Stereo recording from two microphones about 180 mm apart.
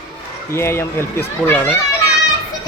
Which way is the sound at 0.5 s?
15° left (ahead or behind).